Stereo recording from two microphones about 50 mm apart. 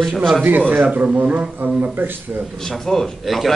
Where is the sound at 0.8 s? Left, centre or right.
Right.